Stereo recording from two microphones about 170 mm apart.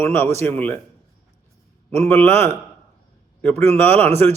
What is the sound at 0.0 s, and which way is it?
Speech, 15° left (ahead or behind).